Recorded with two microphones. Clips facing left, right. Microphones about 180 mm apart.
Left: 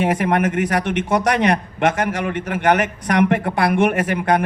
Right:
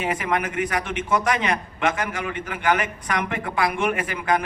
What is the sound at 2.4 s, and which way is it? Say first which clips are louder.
Speech: left 5 dB; 65° left (ahead or behind).